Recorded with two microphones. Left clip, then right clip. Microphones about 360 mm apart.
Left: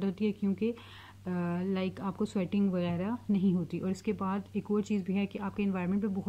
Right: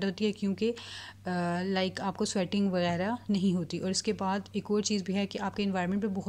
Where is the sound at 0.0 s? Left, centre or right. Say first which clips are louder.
Right 2 dB; centre.